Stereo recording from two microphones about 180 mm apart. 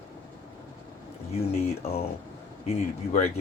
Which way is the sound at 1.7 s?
35° left (ahead or behind).